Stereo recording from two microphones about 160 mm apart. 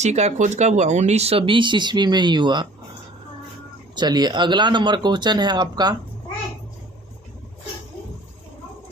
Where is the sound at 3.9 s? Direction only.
25° right (ahead or behind).